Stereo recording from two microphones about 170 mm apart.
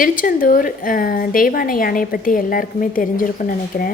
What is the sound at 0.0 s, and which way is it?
A woman's voice, 55° left (ahead or behind).